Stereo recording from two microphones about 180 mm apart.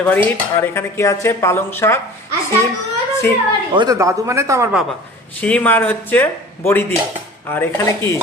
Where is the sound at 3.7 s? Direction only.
20° right (ahead or behind).